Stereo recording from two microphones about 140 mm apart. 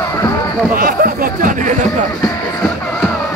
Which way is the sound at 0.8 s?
90° right.